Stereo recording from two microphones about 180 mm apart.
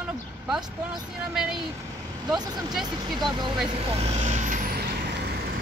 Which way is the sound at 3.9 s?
35° right (ahead or behind).